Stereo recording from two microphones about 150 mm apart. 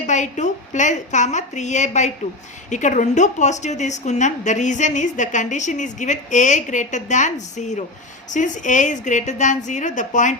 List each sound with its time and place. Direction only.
0.0 s a woman's voice: 55° left (ahead or behind)